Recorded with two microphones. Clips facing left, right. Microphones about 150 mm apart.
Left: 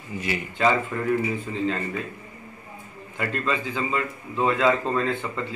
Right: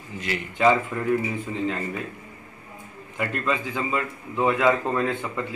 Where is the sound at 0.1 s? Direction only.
5° left (ahead or behind).